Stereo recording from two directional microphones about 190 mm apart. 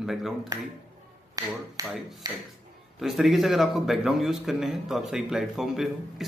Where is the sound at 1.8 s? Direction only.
Centre (ahead or behind).